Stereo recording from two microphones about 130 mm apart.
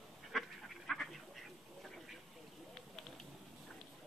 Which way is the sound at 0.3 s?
Centre (ahead or behind).